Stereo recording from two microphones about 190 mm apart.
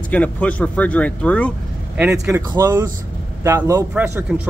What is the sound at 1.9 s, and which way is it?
Speech, 10° right (ahead or behind).